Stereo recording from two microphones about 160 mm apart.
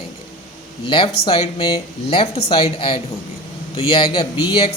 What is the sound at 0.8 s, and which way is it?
Speech, 30° left (ahead or behind).